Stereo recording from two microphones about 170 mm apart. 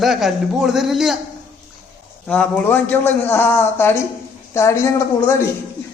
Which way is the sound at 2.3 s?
5° left (ahead or behind).